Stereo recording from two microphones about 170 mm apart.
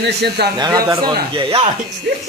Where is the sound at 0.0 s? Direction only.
75° right (ahead or behind).